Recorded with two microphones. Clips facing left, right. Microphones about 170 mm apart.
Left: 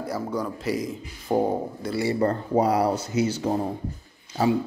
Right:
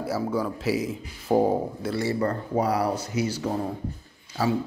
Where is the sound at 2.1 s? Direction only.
30° left (ahead or behind).